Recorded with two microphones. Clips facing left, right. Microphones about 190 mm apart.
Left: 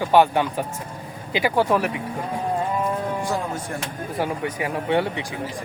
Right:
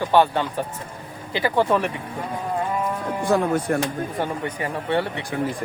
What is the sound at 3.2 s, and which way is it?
Speech, 60° right (ahead or behind).